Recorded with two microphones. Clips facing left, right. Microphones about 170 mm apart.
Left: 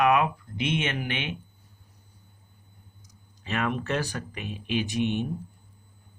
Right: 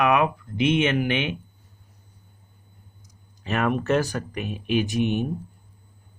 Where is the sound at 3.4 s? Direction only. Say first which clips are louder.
Right 5 dB; 45° right (ahead or behind).